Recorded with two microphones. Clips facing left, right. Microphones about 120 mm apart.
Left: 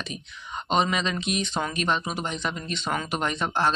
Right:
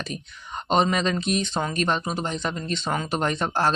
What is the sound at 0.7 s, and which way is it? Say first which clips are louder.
Speech: right 3 dB; 40° right (ahead or behind).